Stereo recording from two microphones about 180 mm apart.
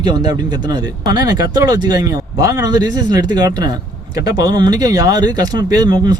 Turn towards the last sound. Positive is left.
turn(degrees=-20)  # may be behind; listen again after turning